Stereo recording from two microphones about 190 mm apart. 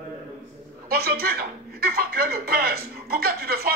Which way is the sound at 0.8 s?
50° right (ahead or behind).